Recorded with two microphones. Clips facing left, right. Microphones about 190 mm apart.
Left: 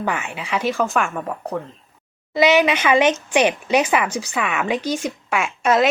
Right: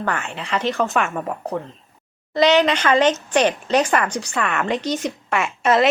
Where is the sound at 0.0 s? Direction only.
10° left (ahead or behind).